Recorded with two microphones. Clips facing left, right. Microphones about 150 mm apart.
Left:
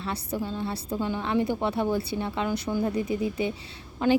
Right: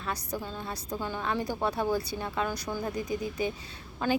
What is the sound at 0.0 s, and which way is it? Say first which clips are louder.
Speech: left 4 dB; 30° left (ahead or behind).